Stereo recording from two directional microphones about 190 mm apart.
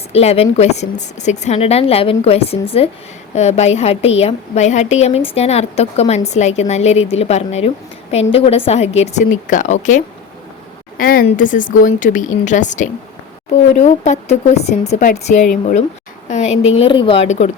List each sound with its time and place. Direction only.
0.1 s a woman's voice: 30° left (ahead or behind)